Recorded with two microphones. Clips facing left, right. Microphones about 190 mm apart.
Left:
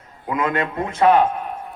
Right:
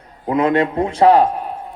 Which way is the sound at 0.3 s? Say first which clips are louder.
Right 6 dB; 30° right (ahead or behind).